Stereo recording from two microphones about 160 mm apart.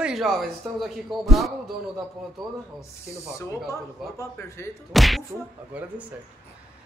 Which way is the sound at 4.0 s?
Centre (ahead or behind).